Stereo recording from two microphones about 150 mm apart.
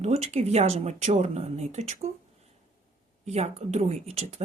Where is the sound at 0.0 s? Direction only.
45° right (ahead or behind).